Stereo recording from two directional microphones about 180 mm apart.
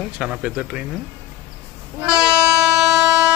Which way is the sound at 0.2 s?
5° right (ahead or behind).